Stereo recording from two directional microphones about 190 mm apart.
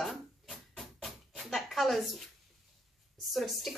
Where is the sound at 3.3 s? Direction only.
Centre (ahead or behind).